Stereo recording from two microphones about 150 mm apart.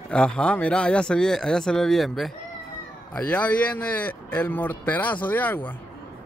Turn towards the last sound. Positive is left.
turn(degrees=10)  # may be behind; listen again after turning